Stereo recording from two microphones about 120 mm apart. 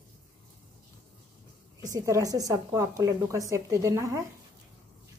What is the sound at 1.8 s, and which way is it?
A woman's voice, 30° right (ahead or behind).